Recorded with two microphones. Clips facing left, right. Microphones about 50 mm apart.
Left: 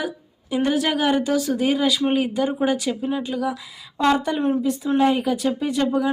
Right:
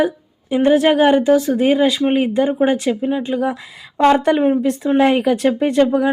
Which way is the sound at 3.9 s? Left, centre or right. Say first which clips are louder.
Right 7 dB; right.